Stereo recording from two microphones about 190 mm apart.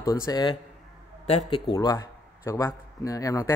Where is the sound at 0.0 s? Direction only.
20° left (ahead or behind).